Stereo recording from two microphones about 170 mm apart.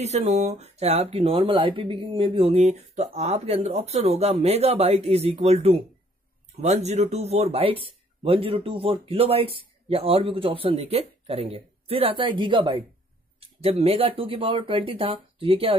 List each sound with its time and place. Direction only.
0.0 s speech: 40° right (ahead or behind)